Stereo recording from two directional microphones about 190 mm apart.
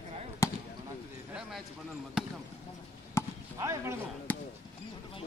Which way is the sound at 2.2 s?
5° right (ahead or behind).